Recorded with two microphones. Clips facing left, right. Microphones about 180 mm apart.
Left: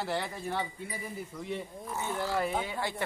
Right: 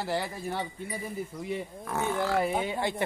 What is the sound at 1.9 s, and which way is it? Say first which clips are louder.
Wild animals: right 5 dB; 65° right (ahead or behind).